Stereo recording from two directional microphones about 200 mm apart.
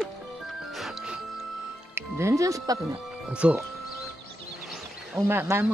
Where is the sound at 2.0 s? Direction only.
15° right (ahead or behind).